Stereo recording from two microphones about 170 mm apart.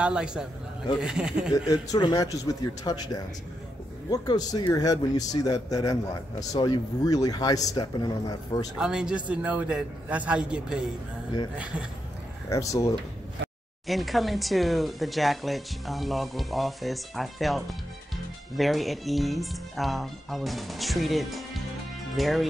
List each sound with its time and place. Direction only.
0.0 s speech: 5° right (ahead or behind)
1.7 s speech: 25° left (ahead or behind)
8.7 s a man's voice: 5° right (ahead or behind)
12.4 s speech: 20° left (ahead or behind)
13.8 s speech: centre (ahead or behind)